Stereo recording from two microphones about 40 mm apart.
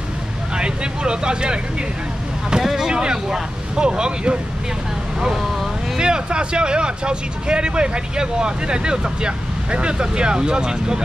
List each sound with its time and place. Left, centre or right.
0.6 s vehicle: right
2.5 s speech: centre
5.9 s speech: right